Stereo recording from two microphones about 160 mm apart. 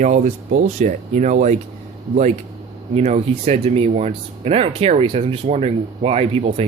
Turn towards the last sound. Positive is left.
turn(degrees=-40)  # may be behind; listen again after turning